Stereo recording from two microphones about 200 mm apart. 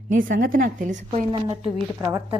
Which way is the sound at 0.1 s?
45° right (ahead or behind).